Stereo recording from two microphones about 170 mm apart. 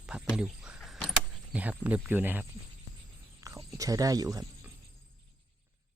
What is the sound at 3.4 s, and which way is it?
Speech, 20° right (ahead or behind).